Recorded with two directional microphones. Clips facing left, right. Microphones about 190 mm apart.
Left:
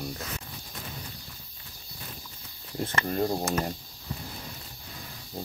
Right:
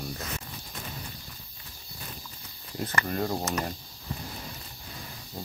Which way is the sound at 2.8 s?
25° left (ahead or behind).